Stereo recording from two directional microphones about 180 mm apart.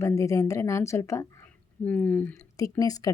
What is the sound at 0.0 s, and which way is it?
A woman's voice, 15° left (ahead or behind).